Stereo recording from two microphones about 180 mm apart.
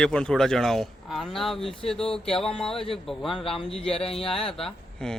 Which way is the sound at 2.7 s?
30° left (ahead or behind).